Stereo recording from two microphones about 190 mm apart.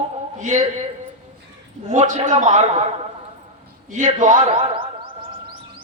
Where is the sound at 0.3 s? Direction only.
40° right (ahead or behind).